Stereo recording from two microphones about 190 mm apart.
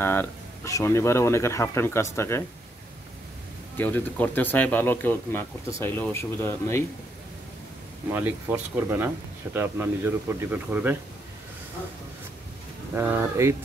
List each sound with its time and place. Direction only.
0.0 s speech: 10° left (ahead or behind)
3.7 s speech: 10° left (ahead or behind)
8.1 s speech: 10° right (ahead or behind)
12.9 s speech: 10° right (ahead or behind)